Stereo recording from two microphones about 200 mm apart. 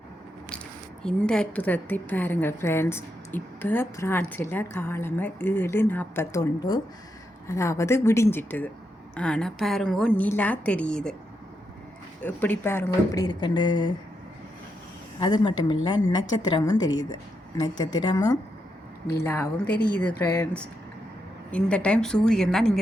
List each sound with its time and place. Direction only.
1.0 s a woman's voice: 5° left (ahead or behind)
12.2 s speech: 10° left (ahead or behind)
15.2 s speech: 20° left (ahead or behind)
16.7 s a woman's voice: 70° left (ahead or behind)
17.7 s a woman's voice: 20° left (ahead or behind); by 22.8 s centre (ahead or behind)